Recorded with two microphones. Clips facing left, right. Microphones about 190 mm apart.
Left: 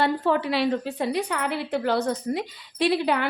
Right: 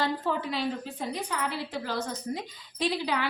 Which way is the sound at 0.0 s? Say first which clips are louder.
Left 6 dB; 70° left (ahead or behind).